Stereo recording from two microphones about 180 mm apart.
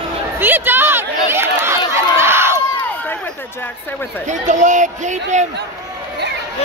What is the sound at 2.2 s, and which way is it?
Crowd, 15° right (ahead or behind).